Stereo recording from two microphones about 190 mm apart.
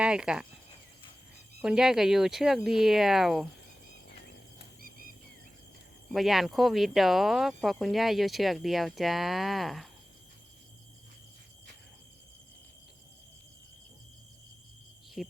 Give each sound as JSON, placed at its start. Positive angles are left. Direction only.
{"t": 0.0, "sound": "speech", "side_deg": -5}
{"t": 1.6, "sound": "speech", "side_deg": -5}
{"t": 4.9, "sound": "a sound", "side_deg": 50}
{"t": 6.1, "sound": "speech", "side_deg": 0}
{"t": 15.2, "sound": "speech", "side_deg": 0}